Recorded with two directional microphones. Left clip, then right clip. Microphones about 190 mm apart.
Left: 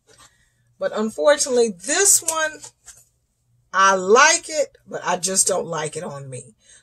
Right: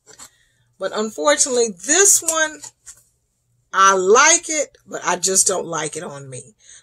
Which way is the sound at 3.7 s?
5° right (ahead or behind).